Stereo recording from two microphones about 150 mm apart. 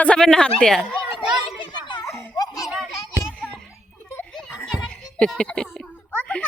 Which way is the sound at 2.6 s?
Centre (ahead or behind).